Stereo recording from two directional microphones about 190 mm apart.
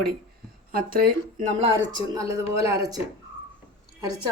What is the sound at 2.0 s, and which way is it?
Speech, 15° right (ahead or behind).